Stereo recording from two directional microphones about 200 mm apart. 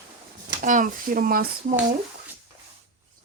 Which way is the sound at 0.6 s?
40° right (ahead or behind).